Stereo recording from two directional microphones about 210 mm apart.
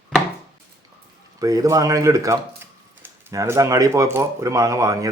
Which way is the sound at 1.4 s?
15° right (ahead or behind).